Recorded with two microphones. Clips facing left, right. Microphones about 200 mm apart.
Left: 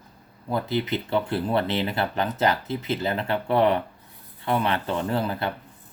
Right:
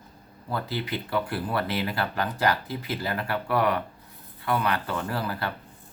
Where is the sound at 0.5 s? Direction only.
20° left (ahead or behind).